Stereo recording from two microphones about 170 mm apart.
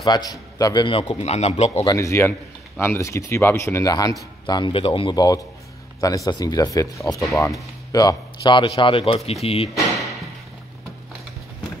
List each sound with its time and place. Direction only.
0.0 s a man's voice: 25° left (ahead or behind); by 1.7 s 40° left (ahead or behind)
1.9 s a man's voice: 15° left (ahead or behind); by 9.7 s 35° left (ahead or behind)